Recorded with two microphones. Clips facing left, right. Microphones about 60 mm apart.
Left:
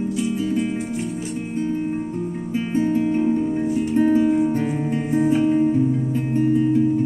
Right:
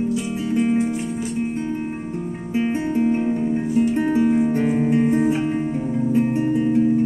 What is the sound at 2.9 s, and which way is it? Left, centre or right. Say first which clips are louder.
Music: even; right.